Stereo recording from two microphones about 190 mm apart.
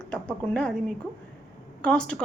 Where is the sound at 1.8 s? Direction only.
5° left (ahead or behind).